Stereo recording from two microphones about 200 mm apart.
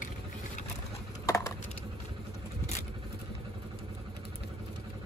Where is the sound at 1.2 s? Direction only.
15° left (ahead or behind).